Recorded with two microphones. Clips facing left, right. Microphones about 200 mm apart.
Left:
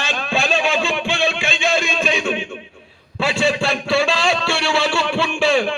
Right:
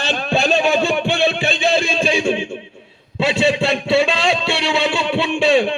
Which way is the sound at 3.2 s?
20° right (ahead or behind).